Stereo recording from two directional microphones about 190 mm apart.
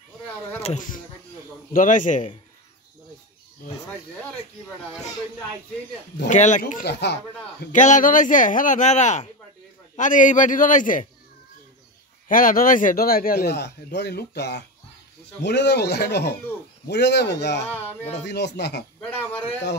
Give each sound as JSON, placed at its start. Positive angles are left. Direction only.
{"t": 0.6, "sound": "a man's voice", "side_deg": 40}
{"t": 6.2, "sound": "a man's voice", "side_deg": 40}
{"t": 6.9, "sound": "speech", "side_deg": 65}
{"t": 7.7, "sound": "a man's voice", "side_deg": 40}
{"t": 12.3, "sound": "a man's voice", "side_deg": 45}
{"t": 18.9, "sound": "speech", "side_deg": 10}